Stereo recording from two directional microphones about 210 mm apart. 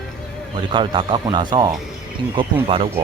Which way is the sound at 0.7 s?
25° right (ahead or behind).